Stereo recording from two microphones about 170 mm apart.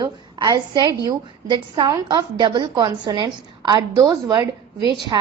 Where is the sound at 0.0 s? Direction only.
25° right (ahead or behind).